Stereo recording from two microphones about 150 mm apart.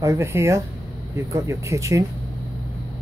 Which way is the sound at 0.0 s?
20° right (ahead or behind).